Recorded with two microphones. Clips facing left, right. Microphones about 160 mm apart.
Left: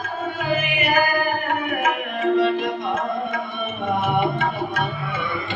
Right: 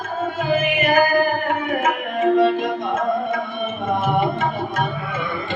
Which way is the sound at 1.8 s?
45° right (ahead or behind).